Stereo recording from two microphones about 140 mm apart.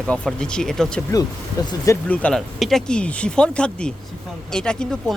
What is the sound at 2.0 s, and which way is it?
Speech, 10° left (ahead or behind).